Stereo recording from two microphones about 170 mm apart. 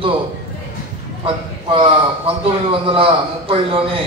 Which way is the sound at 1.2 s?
30° right (ahead or behind).